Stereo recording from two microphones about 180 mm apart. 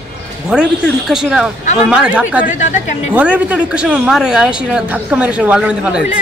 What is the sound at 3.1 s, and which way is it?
Speech, 10° right (ahead or behind).